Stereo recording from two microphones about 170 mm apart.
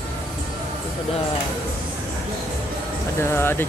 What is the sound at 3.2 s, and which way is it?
Speech, 15° left (ahead or behind).